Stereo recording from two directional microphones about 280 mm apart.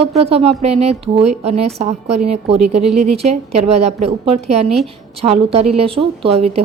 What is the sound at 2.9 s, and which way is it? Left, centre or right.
A woman's voice, right.